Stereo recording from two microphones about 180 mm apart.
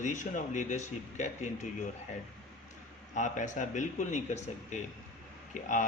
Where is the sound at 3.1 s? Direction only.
45° left (ahead or behind).